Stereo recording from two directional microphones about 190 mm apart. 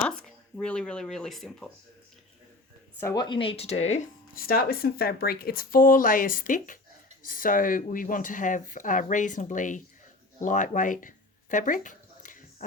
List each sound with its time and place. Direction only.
0.5 s speech: 5° left (ahead or behind)
3.0 s speech: 20° left (ahead or behind); by 4.0 s 35° left (ahead or behind)
4.4 s speech: 50° left (ahead or behind)
10.4 s a sound: 40° left (ahead or behind)